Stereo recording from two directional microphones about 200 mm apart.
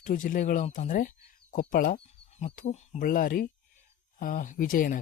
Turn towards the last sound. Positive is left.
turn(degrees=45)  # may be behind; listen again after turning